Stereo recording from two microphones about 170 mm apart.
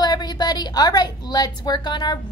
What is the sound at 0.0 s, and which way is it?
A woman's voice, 25° left (ahead or behind).